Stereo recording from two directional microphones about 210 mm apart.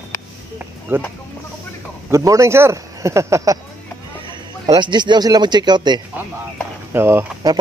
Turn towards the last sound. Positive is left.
turn(degrees=-15)  # may be behind; listen again after turning